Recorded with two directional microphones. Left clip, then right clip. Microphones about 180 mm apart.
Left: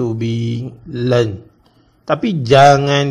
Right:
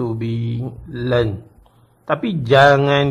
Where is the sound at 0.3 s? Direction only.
25° right (ahead or behind).